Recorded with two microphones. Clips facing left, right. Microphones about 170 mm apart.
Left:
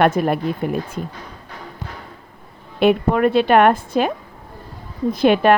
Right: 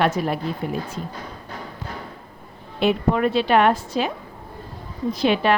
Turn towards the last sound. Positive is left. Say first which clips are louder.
# left 5 dB
turn(degrees=55)  # may be behind; listen again after turning